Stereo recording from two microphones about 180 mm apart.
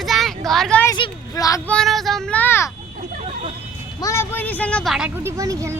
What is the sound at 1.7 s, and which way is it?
Child singing, centre (ahead or behind).